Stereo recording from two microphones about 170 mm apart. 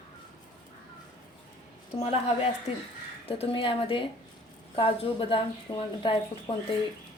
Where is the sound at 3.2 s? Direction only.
35° left (ahead or behind).